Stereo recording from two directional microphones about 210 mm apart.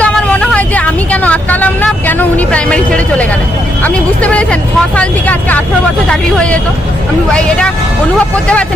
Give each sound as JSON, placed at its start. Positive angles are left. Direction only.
{"t": 0.0, "sound": "vehicle", "side_deg": 5}
{"t": 3.8, "sound": "a sound", "side_deg": 5}
{"t": 4.9, "sound": "vehicle", "side_deg": 5}
{"t": 6.1, "sound": "speech", "side_deg": 5}